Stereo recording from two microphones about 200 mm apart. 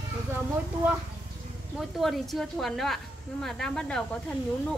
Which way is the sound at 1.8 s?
Centre (ahead or behind).